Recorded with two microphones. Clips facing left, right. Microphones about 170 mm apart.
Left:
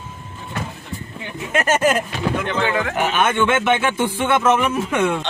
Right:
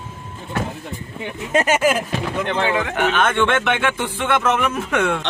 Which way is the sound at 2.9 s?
10° left (ahead or behind).